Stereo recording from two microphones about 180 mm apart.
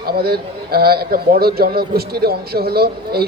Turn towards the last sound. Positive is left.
turn(degrees=-60)  # may be behind; listen again after turning